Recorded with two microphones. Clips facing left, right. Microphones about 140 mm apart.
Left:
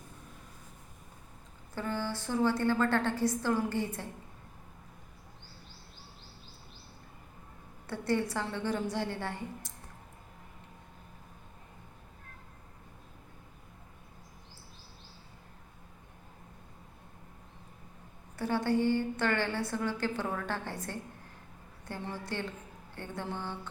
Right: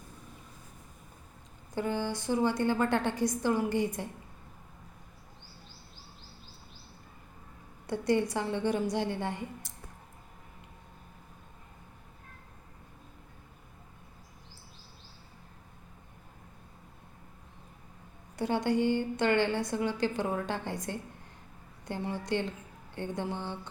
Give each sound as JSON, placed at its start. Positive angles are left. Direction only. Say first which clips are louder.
{"t": 1.7, "sound": "a woman's voice", "louder": "right 3 dB", "side_deg": -15}
{"t": 7.9, "sound": "a woman's voice", "louder": "right 3 dB", "side_deg": -15}
{"t": 18.3, "sound": "a woman's voice", "louder": "right 1 dB", "side_deg": -20}